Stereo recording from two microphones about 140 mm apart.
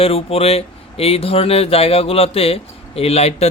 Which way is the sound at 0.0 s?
45° left (ahead or behind).